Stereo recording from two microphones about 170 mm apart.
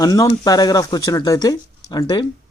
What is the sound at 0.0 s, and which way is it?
Speech, 20° left (ahead or behind).